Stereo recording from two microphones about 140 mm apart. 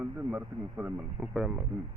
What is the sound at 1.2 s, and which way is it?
Speech, centre (ahead or behind).